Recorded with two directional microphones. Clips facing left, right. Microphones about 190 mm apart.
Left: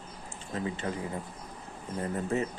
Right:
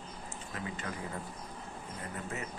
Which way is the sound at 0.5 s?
30° left (ahead or behind).